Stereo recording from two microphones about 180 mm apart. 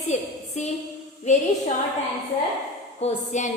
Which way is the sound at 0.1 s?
40° left (ahead or behind).